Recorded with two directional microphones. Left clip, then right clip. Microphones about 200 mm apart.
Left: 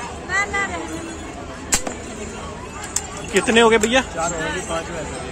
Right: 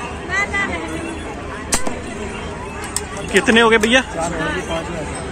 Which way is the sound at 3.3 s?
10° left (ahead or behind).